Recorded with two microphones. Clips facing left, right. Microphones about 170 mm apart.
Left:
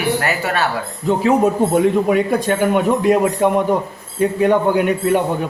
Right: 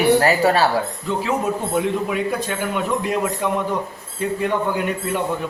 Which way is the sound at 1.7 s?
50° left (ahead or behind).